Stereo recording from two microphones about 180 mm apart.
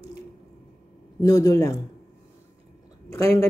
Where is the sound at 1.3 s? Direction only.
20° left (ahead or behind).